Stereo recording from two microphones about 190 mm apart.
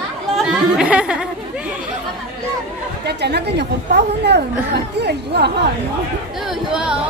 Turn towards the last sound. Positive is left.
turn(degrees=-5)  # may be behind; listen again after turning